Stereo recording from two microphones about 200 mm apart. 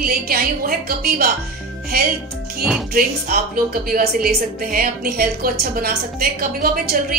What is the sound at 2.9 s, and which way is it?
A woman's voice, 50° right (ahead or behind).